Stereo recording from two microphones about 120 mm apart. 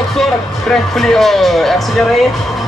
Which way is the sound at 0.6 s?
5° left (ahead or behind).